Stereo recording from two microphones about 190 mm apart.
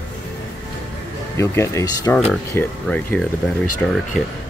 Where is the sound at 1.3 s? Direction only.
15° left (ahead or behind).